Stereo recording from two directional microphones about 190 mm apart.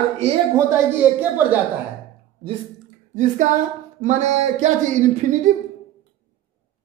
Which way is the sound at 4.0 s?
40° right (ahead or behind).